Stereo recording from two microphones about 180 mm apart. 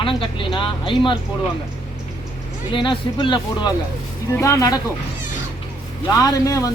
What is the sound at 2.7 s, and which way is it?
Speech, 25° left (ahead or behind).